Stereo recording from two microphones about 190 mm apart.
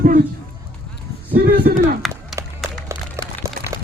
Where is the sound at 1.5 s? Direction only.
45° right (ahead or behind).